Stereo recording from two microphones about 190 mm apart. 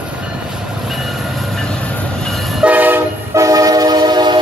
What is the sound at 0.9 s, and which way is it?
Train, centre (ahead or behind).